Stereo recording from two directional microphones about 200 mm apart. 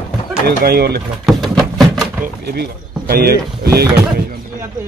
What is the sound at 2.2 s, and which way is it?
Speech, 55° right (ahead or behind).